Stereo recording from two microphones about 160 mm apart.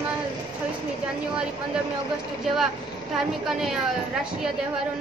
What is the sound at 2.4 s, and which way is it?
A woman's voice, centre (ahead or behind).